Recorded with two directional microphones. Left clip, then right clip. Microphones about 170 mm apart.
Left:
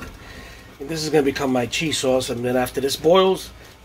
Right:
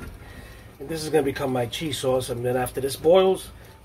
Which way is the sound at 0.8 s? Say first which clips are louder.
Left 4 dB; 25° left (ahead or behind).